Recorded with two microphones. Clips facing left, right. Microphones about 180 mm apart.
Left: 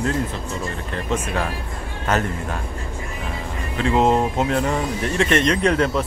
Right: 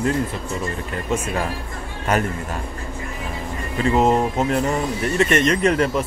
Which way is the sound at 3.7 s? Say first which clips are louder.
Even; 5° right (ahead or behind).